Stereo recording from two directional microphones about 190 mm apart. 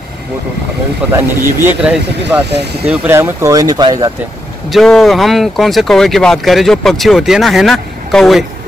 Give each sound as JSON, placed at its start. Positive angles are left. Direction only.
{"t": 1.1, "sound": "speech", "side_deg": -10}
{"t": 2.5, "sound": "speech", "side_deg": -60}
{"t": 2.8, "sound": "speech", "side_deg": -10}
{"t": 4.6, "sound": "speech", "side_deg": 0}